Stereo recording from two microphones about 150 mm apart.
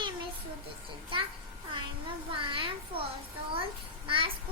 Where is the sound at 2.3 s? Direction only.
35° right (ahead or behind).